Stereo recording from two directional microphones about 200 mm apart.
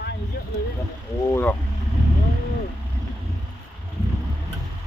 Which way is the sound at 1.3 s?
10° left (ahead or behind).